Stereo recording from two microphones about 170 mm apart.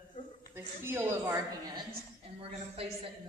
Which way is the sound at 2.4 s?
35° right (ahead or behind).